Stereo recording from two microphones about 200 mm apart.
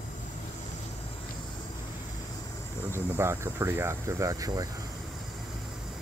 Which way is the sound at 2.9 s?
15° right (ahead or behind).